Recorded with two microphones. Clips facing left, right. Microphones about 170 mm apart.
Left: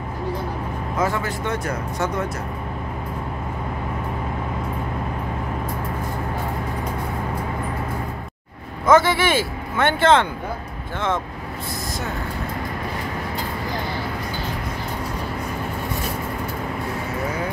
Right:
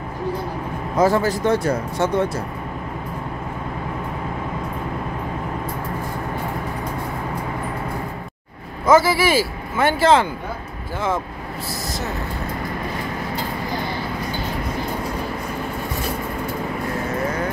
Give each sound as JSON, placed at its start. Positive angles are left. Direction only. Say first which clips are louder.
{"t": 0.9, "sound": "speech", "louder": "right 7 dB", "side_deg": -35}
{"t": 8.8, "sound": "speech", "louder": "right 1 dB", "side_deg": -5}